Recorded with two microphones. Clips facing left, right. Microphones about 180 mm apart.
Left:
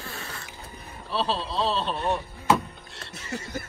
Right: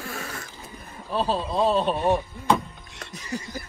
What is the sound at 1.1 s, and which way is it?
Speech, 50° right (ahead or behind).